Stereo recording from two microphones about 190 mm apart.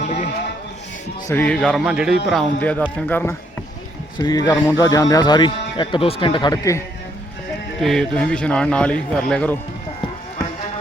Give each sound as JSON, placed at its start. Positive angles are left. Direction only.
{"t": 0.0, "sound": "a sound", "side_deg": 35}
{"t": 1.3, "sound": "a man's voice", "side_deg": 10}
{"t": 7.8, "sound": "a man's voice", "side_deg": 0}